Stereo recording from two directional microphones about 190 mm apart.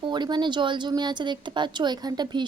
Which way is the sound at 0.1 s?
25° right (ahead or behind).